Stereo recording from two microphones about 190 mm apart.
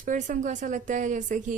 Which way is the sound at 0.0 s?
40° right (ahead or behind).